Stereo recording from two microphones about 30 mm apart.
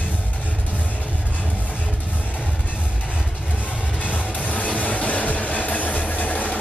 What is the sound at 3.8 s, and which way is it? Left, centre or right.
Music, left.